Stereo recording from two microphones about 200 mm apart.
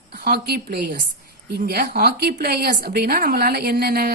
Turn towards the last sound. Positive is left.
turn(degrees=-50)  # may be behind; listen again after turning